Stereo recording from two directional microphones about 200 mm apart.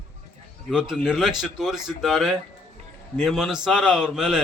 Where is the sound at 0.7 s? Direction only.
5° right (ahead or behind).